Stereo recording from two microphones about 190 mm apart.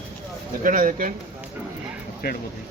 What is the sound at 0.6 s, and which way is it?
Speech, 45° right (ahead or behind).